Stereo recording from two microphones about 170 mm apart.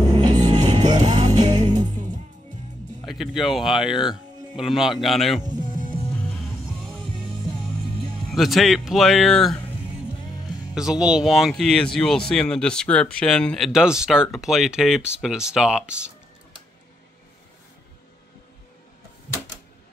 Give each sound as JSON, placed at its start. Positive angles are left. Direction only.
{"t": 0.1, "sound": "music", "side_deg": -25}
{"t": 1.8, "sound": "music", "side_deg": -45}
{"t": 3.1, "sound": "speech", "side_deg": 0}
{"t": 8.3, "sound": "speech", "side_deg": 0}
{"t": 10.7, "sound": "speech", "side_deg": -5}